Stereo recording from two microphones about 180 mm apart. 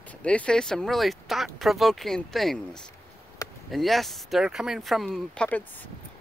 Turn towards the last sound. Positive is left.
turn(degrees=5)  # may be behind; listen again after turning